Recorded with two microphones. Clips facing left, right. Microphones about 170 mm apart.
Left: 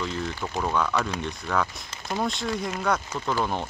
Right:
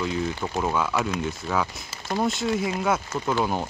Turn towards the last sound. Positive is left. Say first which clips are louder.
# right 2 dB
turn(degrees=-5)  # may be behind; listen again after turning